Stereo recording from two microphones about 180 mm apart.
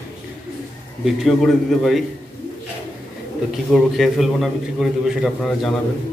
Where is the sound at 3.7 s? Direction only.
Centre (ahead or behind).